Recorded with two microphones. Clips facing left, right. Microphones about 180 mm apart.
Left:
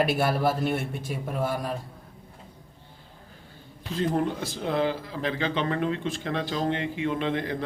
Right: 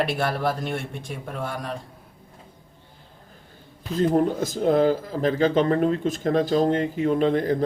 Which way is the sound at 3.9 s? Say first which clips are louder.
Right 6 dB; 40° right (ahead or behind).